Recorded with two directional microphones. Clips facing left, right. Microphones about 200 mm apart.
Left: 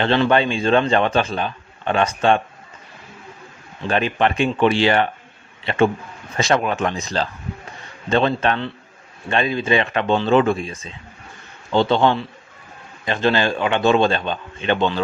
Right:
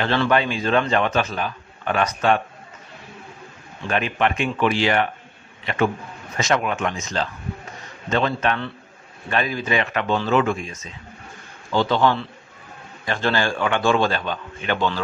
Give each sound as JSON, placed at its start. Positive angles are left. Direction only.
{"t": 0.0, "sound": "a man's voice", "side_deg": 25}
{"t": 3.8, "sound": "a man's voice", "side_deg": 30}